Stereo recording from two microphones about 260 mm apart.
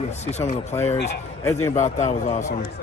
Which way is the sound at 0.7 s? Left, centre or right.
Centre.